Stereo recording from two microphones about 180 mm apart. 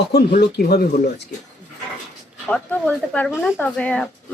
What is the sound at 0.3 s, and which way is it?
Speech, 60° left (ahead or behind).